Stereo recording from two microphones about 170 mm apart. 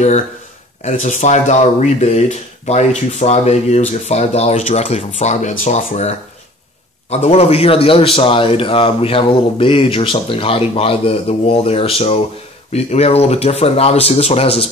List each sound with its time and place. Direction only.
0.8 s speech: 45° left (ahead or behind)